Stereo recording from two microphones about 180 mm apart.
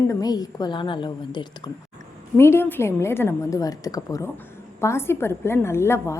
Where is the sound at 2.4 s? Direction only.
15° left (ahead or behind).